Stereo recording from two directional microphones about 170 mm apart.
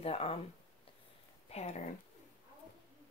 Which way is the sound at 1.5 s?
40° left (ahead or behind).